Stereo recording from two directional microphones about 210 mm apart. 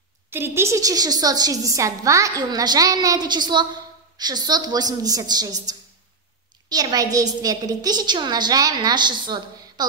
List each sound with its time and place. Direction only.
0.3 s a woman's voice: 10° right (ahead or behind)